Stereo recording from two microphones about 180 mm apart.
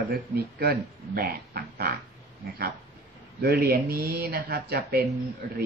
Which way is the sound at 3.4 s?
60° right (ahead or behind).